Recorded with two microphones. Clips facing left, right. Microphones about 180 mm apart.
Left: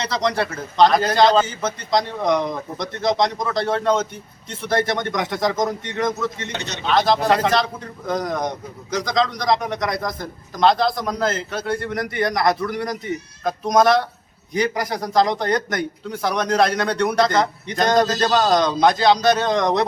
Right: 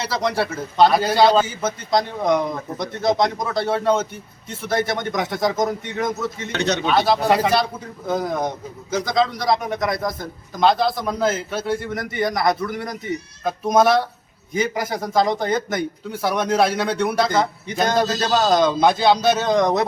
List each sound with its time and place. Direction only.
0.0 s speech: 5° right (ahead or behind)